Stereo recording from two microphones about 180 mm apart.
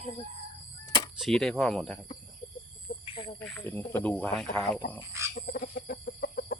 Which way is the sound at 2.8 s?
30° left (ahead or behind).